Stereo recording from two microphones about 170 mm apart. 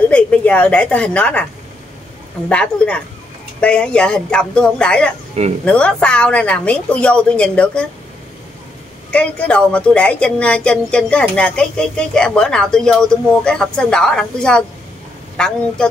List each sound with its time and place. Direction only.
0.1 s a woman's voice: 10° left (ahead or behind)
2.5 s a woman's voice: 5° left (ahead or behind)
5.4 s speech: 40° right (ahead or behind)
5.7 s a woman's voice: 5° left (ahead or behind)
9.1 s speech: 5° left (ahead or behind)